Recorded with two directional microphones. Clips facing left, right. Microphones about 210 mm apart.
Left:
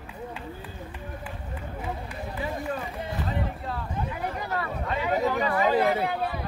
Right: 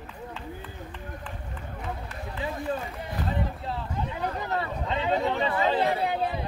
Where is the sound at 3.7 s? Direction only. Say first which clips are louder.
Even; 25° right (ahead or behind).